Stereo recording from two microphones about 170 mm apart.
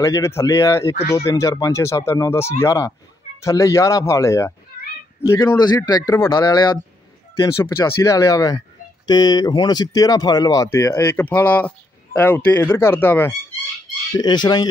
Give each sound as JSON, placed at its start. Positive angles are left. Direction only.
{"t": 0.0, "sound": "speech", "side_deg": 15}
{"t": 14.1, "sound": "speech", "side_deg": 25}